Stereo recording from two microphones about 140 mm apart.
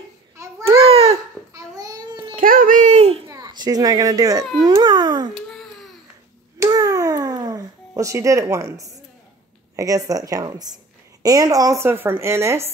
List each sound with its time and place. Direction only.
0.4 s babbling: 20° right (ahead or behind)
0.8 s babbling: 45° right (ahead or behind)
1.5 s a sound: 25° right (ahead or behind)
2.3 s babbling: 85° right; by 3.2 s 50° right (ahead or behind)
3.3 s a child's voice: 25° right (ahead or behind)
4.6 s a sound: 35° right (ahead or behind)
5.3 s babbling: centre (ahead or behind)
6.6 s babbling: 25° right (ahead or behind)
9.8 s a woman's voice: 25° right (ahead or behind)